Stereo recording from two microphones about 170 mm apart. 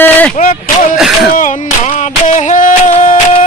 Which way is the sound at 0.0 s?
10° left (ahead or behind).